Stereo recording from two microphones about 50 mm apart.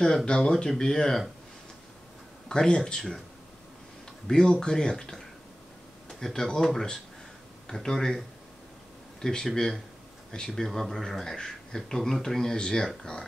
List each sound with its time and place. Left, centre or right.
0.0 s speech: centre
2.4 s speech: centre
4.3 s speech: centre
9.2 s speech: centre
10.5 s speech: centre